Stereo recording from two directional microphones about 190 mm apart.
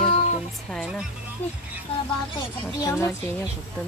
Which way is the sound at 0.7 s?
Centre (ahead or behind).